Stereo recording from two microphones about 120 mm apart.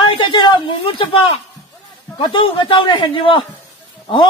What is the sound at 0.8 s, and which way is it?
A man's voice, 50° left (ahead or behind).